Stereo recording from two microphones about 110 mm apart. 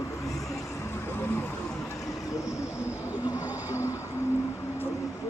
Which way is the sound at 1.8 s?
30° left (ahead or behind).